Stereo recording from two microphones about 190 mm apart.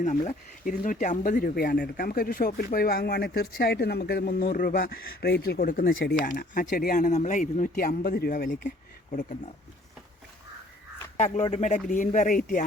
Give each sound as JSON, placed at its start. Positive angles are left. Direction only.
{"t": 0.0, "sound": "speech", "side_deg": 40}
{"t": 11.2, "sound": "speech", "side_deg": 35}